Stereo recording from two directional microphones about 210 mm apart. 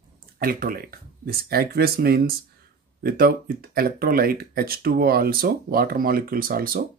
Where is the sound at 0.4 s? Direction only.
45° right (ahead or behind).